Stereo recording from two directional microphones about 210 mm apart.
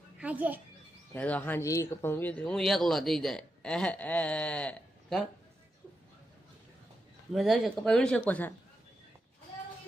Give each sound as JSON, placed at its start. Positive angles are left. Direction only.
{"t": 0.2, "sound": "a woman's voice", "side_deg": -5}
{"t": 1.1, "sound": "speech", "side_deg": 5}
{"t": 7.3, "sound": "speech", "side_deg": 0}